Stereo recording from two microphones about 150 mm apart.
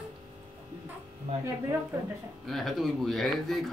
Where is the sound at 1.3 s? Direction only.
40° right (ahead or behind).